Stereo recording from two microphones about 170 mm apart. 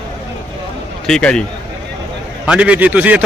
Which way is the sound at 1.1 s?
5° left (ahead or behind).